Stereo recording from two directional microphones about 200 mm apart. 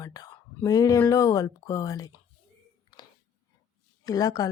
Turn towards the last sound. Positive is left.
turn(degrees=15)  # may be behind; listen again after turning